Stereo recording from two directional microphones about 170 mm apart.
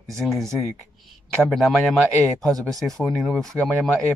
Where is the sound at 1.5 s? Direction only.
Centre (ahead or behind).